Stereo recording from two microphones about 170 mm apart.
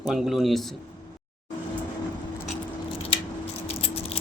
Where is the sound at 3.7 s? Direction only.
35° left (ahead or behind).